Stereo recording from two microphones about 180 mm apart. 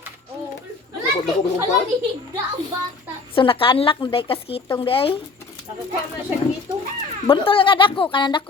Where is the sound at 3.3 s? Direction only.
30° left (ahead or behind).